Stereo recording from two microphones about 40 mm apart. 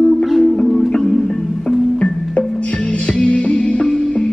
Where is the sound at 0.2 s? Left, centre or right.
Centre.